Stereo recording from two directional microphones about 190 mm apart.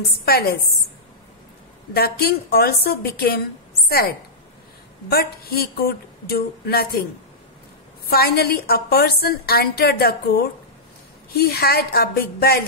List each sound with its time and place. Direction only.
0.0 s a woman's voice: 55° left (ahead or behind)
2.0 s speech: 55° left (ahead or behind)
5.1 s speech: 55° left (ahead or behind)
8.1 s a woman's voice: 55° left (ahead or behind)